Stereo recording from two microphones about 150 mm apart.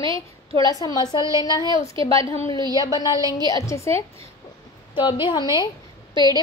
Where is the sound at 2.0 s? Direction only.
40° right (ahead or behind).